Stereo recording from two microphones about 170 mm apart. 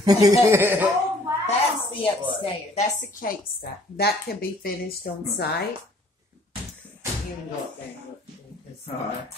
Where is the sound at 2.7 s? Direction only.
50° left (ahead or behind); by 5.6 s 65° left (ahead or behind).